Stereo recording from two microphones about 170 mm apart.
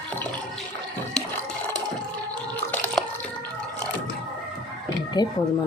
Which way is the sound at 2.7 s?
10° left (ahead or behind).